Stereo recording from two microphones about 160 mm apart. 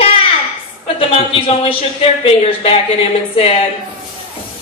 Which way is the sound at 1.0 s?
35° left (ahead or behind).